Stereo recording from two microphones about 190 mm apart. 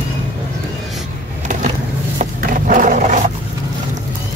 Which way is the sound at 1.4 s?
40° right (ahead or behind).